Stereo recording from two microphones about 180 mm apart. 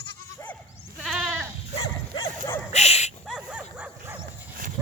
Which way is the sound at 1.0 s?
Centre (ahead or behind).